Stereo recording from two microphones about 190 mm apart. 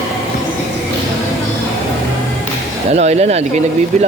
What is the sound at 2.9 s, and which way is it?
Speech, 35° right (ahead or behind).